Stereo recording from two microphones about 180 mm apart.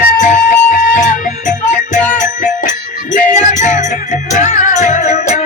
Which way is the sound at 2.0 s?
5° left (ahead or behind).